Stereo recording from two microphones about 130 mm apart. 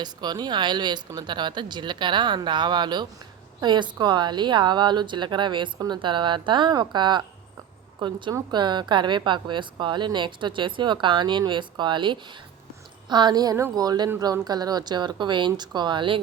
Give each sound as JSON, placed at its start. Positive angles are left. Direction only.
{"t": 0.0, "sound": "a woman's voice", "side_deg": -35}